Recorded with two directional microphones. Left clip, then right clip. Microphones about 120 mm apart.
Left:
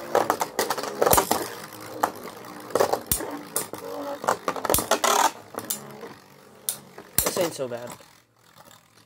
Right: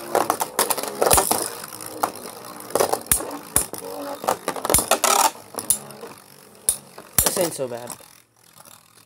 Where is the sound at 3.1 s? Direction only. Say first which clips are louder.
Right 2 dB; 15° left (ahead or behind).